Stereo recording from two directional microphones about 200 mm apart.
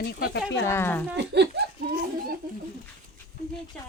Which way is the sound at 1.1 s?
55° right (ahead or behind).